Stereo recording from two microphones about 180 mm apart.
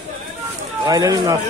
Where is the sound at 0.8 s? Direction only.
20° right (ahead or behind).